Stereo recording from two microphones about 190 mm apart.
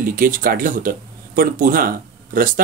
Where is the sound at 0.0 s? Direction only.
45° right (ahead or behind).